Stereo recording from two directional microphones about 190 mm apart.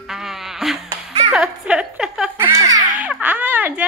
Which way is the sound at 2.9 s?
10° right (ahead or behind).